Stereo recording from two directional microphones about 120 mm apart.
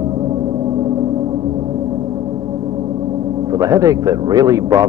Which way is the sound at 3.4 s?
30° right (ahead or behind).